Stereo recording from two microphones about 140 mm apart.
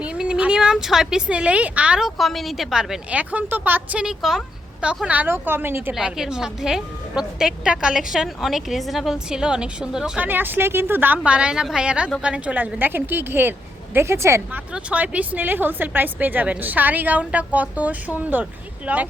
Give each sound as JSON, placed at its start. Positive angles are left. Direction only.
{"t": 0.0, "sound": "a woman's voice", "side_deg": -5}
{"t": 5.9, "sound": "a woman's voice", "side_deg": -5}
{"t": 14.7, "sound": "a woman's voice", "side_deg": -10}